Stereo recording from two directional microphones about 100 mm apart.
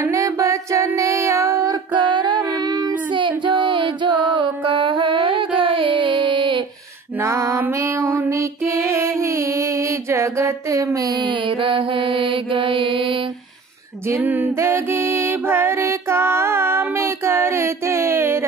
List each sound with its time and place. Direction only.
0.0 s music: 30° right (ahead or behind)
1.9 s child singing: 50° right (ahead or behind)
3.2 s music: 55° right (ahead or behind)
7.2 s female singing: 30° right (ahead or behind)
7.7 s music: 30° right (ahead or behind)
11.1 s mantra: 55° right (ahead or behind)
14.0 s music: 20° right (ahead or behind)